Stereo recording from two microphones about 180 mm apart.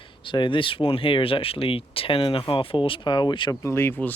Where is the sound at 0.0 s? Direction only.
25° left (ahead or behind).